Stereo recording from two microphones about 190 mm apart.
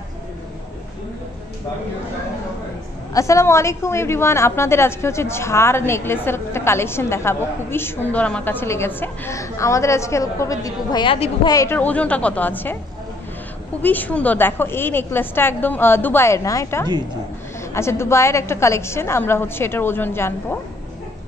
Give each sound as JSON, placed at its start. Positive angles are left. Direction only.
{"t": 3.1, "sound": "a woman's voice", "side_deg": 15}
{"t": 11.4, "sound": "a woman's voice", "side_deg": 15}
{"t": 13.8, "sound": "a woman's voice", "side_deg": 10}